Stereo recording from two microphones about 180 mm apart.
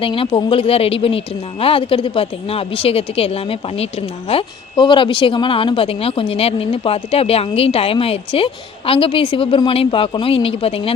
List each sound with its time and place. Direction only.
0.0 s speech: 30° left (ahead or behind)